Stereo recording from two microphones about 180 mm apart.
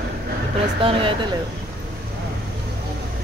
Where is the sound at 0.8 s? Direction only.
30° right (ahead or behind).